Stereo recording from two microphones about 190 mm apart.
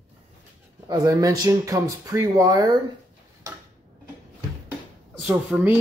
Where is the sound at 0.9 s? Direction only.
20° right (ahead or behind).